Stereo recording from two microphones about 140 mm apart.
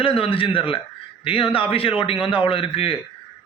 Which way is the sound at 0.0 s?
40° left (ahead or behind).